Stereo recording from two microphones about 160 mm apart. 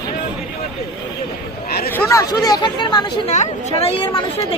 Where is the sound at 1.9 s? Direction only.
15° left (ahead or behind).